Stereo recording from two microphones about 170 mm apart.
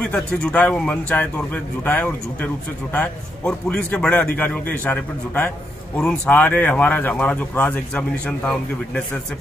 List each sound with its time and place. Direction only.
0.1 s a man's voice: 5° left (ahead or behind)